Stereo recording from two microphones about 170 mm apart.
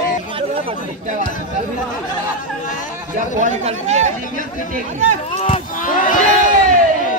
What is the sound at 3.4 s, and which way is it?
Speech, 40° right (ahead or behind).